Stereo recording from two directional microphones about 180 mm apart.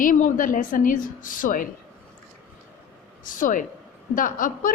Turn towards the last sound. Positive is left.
turn(degrees=50)  # may be behind; listen again after turning